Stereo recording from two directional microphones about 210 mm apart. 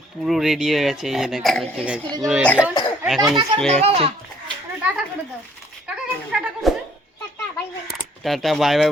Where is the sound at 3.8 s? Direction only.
30° right (ahead or behind).